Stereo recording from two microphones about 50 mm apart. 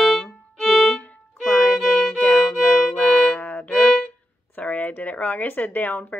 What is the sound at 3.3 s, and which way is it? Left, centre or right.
Violin, left.